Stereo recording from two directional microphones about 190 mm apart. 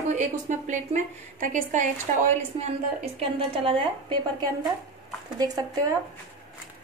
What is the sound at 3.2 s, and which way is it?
A woman's voice, 30° right (ahead or behind).